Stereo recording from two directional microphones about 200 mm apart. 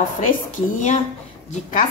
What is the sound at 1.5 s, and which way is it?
Speech, 35° left (ahead or behind).